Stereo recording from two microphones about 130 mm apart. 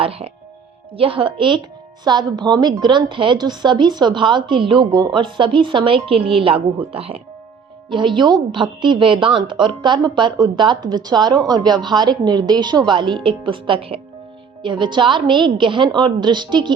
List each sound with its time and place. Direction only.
0.0 s speech: 50° right (ahead or behind)